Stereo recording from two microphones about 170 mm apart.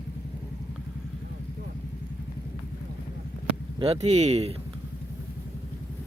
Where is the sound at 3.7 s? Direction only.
35° right (ahead or behind).